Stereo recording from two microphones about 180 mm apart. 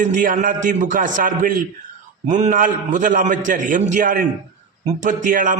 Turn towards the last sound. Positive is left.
turn(degrees=-50)  # may be behind; listen again after turning